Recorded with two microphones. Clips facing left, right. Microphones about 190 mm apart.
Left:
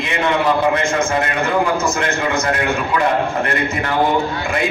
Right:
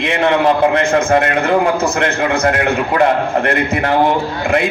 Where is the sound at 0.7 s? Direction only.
60° right (ahead or behind).